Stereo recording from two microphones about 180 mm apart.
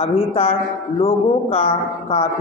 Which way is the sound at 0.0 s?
30° left (ahead or behind).